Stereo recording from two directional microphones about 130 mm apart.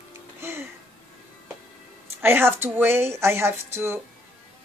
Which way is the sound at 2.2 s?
15° right (ahead or behind).